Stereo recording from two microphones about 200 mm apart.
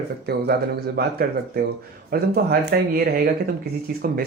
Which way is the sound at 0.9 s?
50° right (ahead or behind).